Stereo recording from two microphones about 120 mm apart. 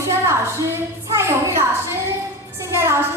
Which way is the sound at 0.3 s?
20° right (ahead or behind).